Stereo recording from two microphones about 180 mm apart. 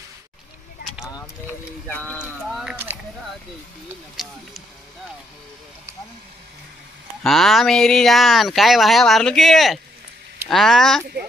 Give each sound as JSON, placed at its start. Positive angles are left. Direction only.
{"t": 1.9, "sound": "a sound", "side_deg": 10}
{"t": 3.9, "sound": "speech", "side_deg": 0}
{"t": 7.2, "sound": "speech", "side_deg": 0}